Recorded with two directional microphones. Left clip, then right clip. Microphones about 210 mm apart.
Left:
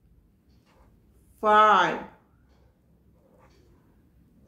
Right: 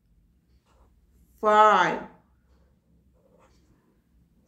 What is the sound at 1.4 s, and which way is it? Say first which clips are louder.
Speech: even; 20° right (ahead or behind).